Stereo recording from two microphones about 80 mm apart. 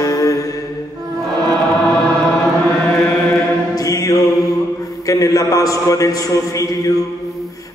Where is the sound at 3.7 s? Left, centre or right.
Left.